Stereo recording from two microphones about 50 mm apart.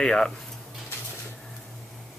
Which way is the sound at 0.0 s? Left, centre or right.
Centre.